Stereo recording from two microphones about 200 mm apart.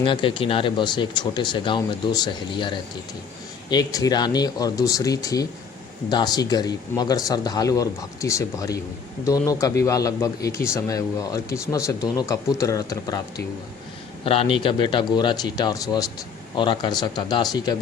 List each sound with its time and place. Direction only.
0.0 s speech: 25° left (ahead or behind)